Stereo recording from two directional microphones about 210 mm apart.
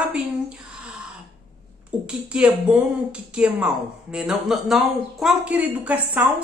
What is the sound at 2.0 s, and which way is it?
Speech, 5° right (ahead or behind).